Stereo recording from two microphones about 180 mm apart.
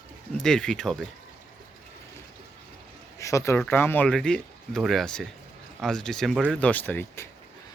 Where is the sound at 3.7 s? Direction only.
10° left (ahead or behind).